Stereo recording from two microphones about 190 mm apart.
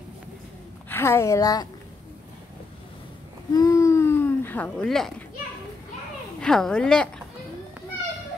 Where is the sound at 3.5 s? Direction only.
20° left (ahead or behind); by 5.1 s centre (ahead or behind).